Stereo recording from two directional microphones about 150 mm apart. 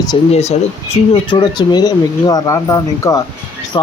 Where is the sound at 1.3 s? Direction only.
30° left (ahead or behind).